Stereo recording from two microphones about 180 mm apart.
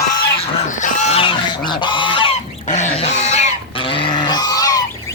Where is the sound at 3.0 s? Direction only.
40° left (ahead or behind); by 4.8 s 20° left (ahead or behind).